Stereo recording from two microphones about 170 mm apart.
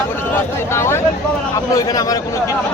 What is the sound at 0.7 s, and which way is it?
Speech, 15° left (ahead or behind).